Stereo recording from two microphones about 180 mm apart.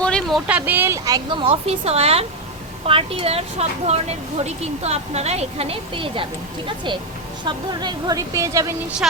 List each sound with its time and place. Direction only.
0.0 s speech: 5° left (ahead or behind); by 6.2 s 30° right (ahead or behind)
7.4 s speech: 25° right (ahead or behind)